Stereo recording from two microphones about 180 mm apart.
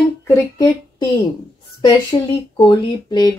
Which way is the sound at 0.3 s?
15° left (ahead or behind).